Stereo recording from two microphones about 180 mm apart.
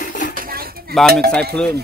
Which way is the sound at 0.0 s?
50° left (ahead or behind).